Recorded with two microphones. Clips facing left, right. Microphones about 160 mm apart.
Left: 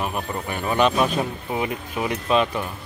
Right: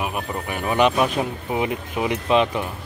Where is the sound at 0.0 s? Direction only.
10° right (ahead or behind).